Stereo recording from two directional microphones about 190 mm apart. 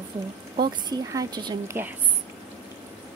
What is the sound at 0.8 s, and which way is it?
Speech, 20° right (ahead or behind).